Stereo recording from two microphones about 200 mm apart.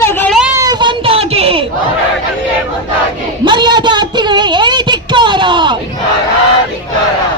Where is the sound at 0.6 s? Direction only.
20° right (ahead or behind).